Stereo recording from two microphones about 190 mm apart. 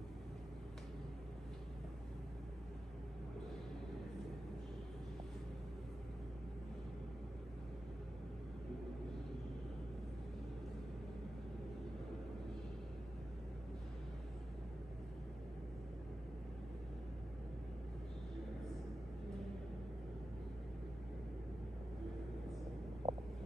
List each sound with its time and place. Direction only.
23.0 s vehicle: 35° right (ahead or behind)